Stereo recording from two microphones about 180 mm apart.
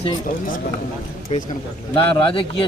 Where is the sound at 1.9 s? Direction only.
30° left (ahead or behind).